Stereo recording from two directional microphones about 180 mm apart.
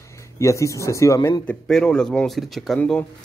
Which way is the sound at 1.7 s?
5° left (ahead or behind).